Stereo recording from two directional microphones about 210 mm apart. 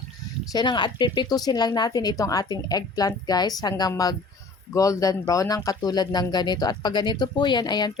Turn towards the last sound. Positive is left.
turn(degrees=20)  # may be behind; listen again after turning